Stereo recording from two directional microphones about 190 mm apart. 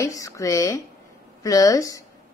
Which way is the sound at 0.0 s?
15° left (ahead or behind).